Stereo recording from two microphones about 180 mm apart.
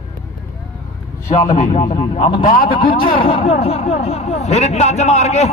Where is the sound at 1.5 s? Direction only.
40° left (ahead or behind).